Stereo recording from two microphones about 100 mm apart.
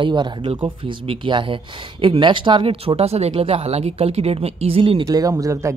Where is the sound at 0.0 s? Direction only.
55° right (ahead or behind).